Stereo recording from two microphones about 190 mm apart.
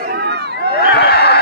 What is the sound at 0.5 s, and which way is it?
Snicker, 60° left (ahead or behind).